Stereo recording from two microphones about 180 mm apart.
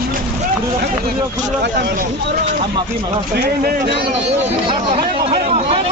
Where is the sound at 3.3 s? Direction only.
60° right (ahead or behind).